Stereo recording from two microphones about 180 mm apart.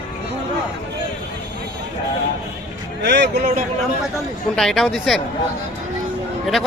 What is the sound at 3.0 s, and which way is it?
Speech, 70° right (ahead or behind).